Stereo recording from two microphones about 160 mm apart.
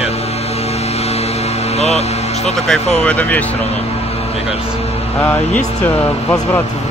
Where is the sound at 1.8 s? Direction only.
40° left (ahead or behind).